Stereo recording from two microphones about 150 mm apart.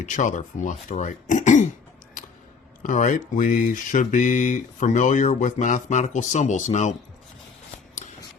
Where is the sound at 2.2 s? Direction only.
60° left (ahead or behind).